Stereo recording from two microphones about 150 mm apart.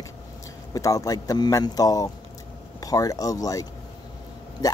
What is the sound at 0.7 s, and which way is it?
Speech, 25° left (ahead or behind).